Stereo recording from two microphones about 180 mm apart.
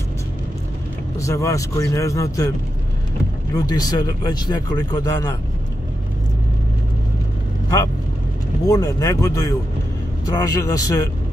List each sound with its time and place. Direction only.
1.1 s speech: 15° left (ahead or behind)
3.5 s speech: 20° left (ahead or behind)
8.6 s speech: 20° left (ahead or behind)